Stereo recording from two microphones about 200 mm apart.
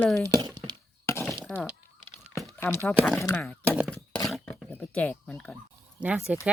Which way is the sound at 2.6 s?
10° left (ahead or behind).